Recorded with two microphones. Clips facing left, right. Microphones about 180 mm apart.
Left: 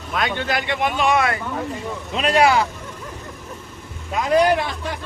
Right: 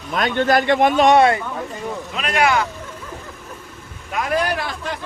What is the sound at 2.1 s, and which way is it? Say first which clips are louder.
Speech: left 3 dB; 30° left (ahead or behind).